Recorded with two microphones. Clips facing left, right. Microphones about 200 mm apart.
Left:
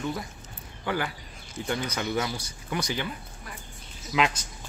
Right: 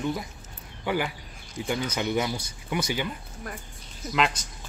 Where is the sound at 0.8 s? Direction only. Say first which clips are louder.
Right 2 dB; 10° right (ahead or behind).